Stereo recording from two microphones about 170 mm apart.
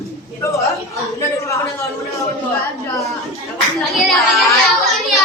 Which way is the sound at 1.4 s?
20° left (ahead or behind).